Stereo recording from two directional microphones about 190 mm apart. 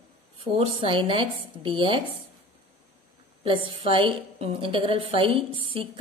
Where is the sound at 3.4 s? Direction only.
30° right (ahead or behind).